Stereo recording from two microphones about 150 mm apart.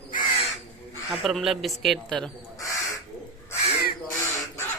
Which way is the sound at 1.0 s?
Centre (ahead or behind).